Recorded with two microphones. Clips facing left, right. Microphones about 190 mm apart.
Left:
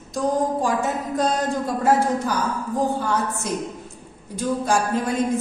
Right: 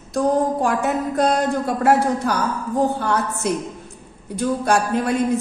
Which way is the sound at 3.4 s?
65° right (ahead or behind).